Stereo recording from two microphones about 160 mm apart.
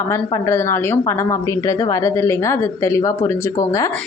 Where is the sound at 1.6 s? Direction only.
20° left (ahead or behind).